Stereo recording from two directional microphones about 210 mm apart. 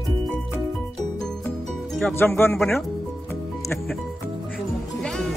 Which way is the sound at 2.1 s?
10° left (ahead or behind).